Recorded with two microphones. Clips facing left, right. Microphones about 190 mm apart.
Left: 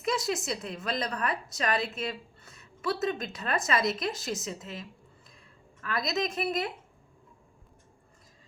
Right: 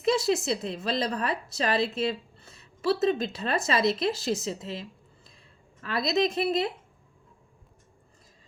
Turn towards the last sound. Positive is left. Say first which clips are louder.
# right 5 dB
turn(degrees=-30)  # may be behind; listen again after turning